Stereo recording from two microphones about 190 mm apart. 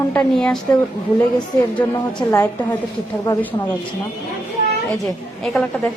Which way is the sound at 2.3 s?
10° left (ahead or behind).